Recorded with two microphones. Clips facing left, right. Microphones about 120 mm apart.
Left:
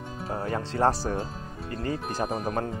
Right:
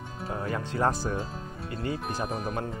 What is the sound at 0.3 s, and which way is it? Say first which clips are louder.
Speech: left 2 dB; 30° left (ahead or behind).